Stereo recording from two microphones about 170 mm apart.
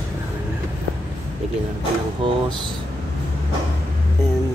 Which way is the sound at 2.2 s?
30° right (ahead or behind).